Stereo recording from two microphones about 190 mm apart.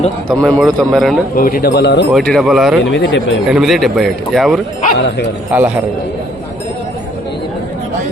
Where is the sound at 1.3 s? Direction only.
50° left (ahead or behind); by 2.1 s 65° left (ahead or behind).